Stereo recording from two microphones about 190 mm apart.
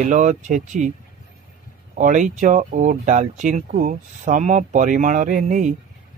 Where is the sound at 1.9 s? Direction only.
40° right (ahead or behind).